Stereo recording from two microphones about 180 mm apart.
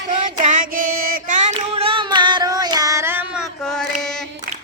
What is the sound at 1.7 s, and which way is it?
Child singing, 30° right (ahead or behind).